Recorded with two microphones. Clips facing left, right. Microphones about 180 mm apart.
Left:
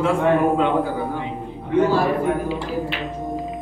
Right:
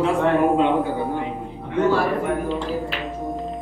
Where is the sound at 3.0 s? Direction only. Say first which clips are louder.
Left 1 dB; centre (ahead or behind).